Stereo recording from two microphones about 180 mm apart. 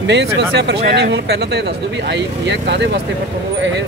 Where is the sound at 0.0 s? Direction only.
75° right (ahead or behind).